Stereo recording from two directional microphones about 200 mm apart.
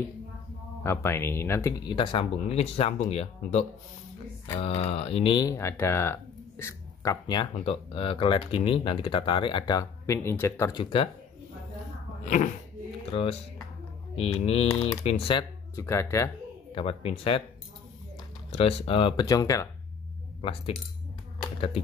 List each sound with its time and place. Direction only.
0.8 s speech: 10° left (ahead or behind)
7.5 s speech: 30° left (ahead or behind)
12.3 s typing: 40° left (ahead or behind)
15.2 s speech: 20° left (ahead or behind)
16.7 s speech: 30° left (ahead or behind)
18.5 s speech: 30° left (ahead or behind)